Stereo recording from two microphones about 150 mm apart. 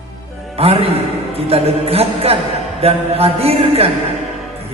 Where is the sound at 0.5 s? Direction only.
40° right (ahead or behind).